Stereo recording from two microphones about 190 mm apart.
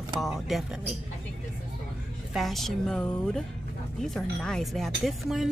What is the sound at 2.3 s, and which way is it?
Speech, centre (ahead or behind).